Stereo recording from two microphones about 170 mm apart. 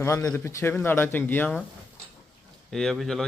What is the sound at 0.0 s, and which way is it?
Speech, 15° left (ahead or behind).